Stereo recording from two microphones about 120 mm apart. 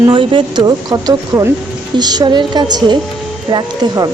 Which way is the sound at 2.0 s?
35° right (ahead or behind).